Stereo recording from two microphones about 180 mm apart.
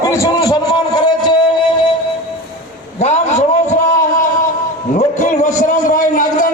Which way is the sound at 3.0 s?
40° left (ahead or behind).